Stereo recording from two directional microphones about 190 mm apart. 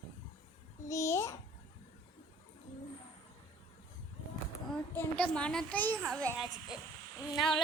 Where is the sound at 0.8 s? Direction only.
15° left (ahead or behind).